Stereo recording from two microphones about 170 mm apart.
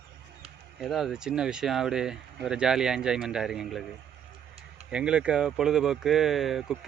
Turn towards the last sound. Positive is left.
turn(degrees=-5)  # may be behind; listen again after turning